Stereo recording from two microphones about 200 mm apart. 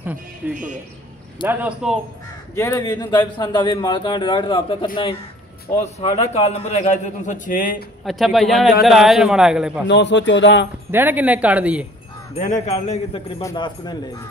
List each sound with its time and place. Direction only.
0.4 s a man's voice: 10° right (ahead or behind)
2.5 s a man's voice: 15° left (ahead or behind)
5.9 s a man's voice: 30° left (ahead or behind)
8.0 s a man's voice: centre (ahead or behind)
9.8 s speech: 60° left (ahead or behind)
10.9 s a man's voice: 10° right (ahead or behind)
12.4 s a man's voice: 35° left (ahead or behind)
13.4 s a man's voice: 20° left (ahead or behind)